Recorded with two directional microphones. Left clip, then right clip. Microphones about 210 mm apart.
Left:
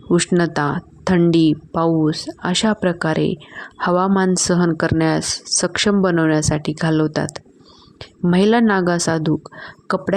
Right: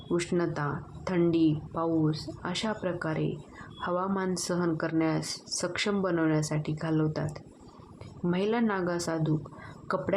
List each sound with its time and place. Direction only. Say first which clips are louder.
0.1 s speech: left 12 dB; 40° left (ahead or behind)